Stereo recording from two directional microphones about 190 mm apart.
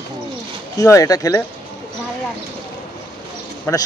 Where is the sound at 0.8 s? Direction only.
20° left (ahead or behind).